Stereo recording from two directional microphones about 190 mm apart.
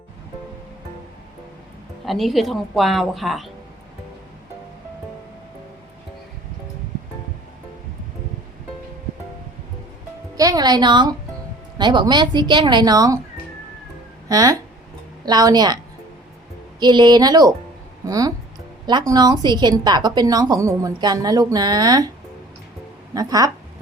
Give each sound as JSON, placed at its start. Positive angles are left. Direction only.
{"t": 2.0, "sound": "a woman's voice", "side_deg": 0}
{"t": 10.3, "sound": "music", "side_deg": -20}
{"t": 11.8, "sound": "a woman's voice", "side_deg": -25}
{"t": 14.3, "sound": "a woman's voice", "side_deg": -20}
{"t": 16.8, "sound": "a woman's voice", "side_deg": -20}
{"t": 23.1, "sound": "a woman's voice", "side_deg": -20}